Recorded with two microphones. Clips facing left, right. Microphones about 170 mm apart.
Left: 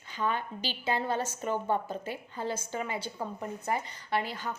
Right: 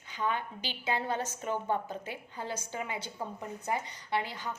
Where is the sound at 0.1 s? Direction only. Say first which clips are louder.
Left 1 dB; 15° right (ahead or behind).